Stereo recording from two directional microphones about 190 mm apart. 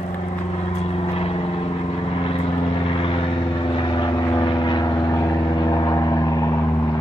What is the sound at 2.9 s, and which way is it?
Vehicle, 30° left (ahead or behind).